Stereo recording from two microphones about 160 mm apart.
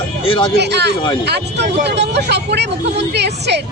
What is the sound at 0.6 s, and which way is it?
Speech, 90° right.